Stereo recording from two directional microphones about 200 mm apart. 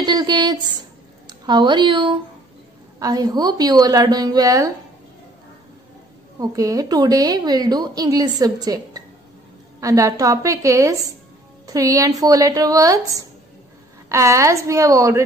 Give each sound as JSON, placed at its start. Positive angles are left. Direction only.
{"t": 0.0, "sound": "a sound", "side_deg": -20}
{"t": 3.0, "sound": "a woman's voice", "side_deg": -20}
{"t": 6.4, "sound": "a woman's voice", "side_deg": -15}